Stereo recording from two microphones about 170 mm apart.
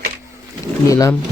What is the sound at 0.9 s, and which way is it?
Speech, 20° left (ahead or behind).